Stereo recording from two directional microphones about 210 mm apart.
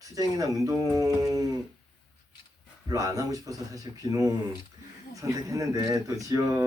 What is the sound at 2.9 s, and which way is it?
Speech, 15° right (ahead or behind).